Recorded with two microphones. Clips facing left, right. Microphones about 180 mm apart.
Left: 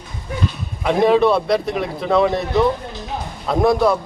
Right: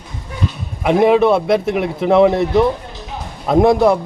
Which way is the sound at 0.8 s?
20° right (ahead or behind).